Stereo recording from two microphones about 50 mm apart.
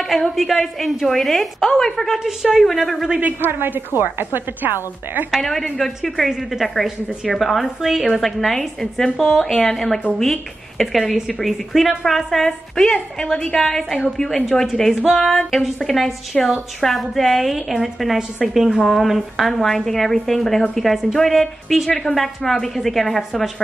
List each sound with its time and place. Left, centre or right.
0.0 s a woman's voice: centre
2.1 s a woman's voice: centre
2.6 s a woman's voice: centre
3.2 s a woman's voice: right
5.3 s a woman's voice: centre
8.5 s a woman's voice: centre